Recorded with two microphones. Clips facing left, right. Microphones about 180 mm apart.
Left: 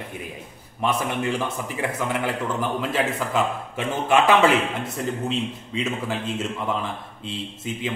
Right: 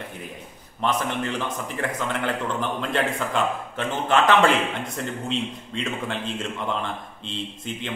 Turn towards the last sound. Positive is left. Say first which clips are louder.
# left 3 dB
turn(degrees=5)  # may be behind; listen again after turning